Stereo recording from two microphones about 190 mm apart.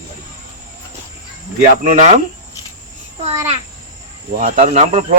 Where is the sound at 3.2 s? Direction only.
35° right (ahead or behind).